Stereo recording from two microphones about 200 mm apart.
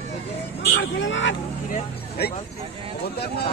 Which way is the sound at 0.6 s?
60° left (ahead or behind).